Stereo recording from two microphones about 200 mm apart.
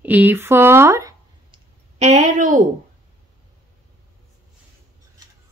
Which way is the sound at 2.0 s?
35° right (ahead or behind).